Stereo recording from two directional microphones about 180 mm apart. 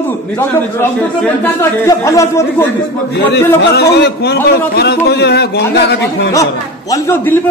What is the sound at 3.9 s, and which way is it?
A man's voice, 70° left (ahead or behind).